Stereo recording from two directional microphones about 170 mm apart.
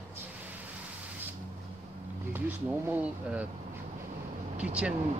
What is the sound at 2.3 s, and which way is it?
Speech, 10° right (ahead or behind).